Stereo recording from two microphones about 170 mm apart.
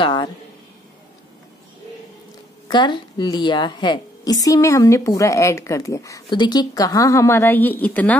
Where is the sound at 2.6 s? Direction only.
25° left (ahead or behind).